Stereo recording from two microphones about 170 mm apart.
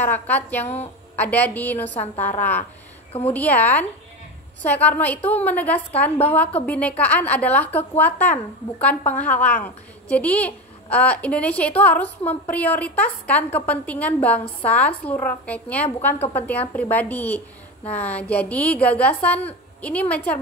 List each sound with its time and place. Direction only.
0.0 s a woman's voice: 10° left (ahead or behind)
3.1 s a woman's voice: 35° left (ahead or behind)
3.3 s a woman's voice: 10° left (ahead or behind)